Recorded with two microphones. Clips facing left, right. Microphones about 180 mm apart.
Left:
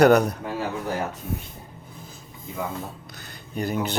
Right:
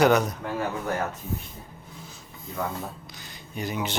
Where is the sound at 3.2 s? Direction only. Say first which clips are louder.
Left 5 dB; 55° left (ahead or behind).